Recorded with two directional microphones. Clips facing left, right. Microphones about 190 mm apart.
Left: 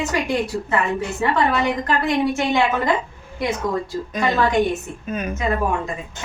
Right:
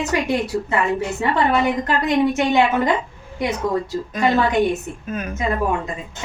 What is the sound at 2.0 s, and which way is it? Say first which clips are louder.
Speech: right 4 dB; 20° right (ahead or behind).